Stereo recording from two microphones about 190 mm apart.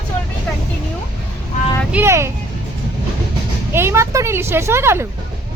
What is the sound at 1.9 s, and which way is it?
Speech, 15° right (ahead or behind).